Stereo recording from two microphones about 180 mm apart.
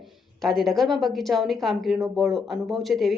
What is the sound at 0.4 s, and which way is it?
Speech, centre (ahead or behind).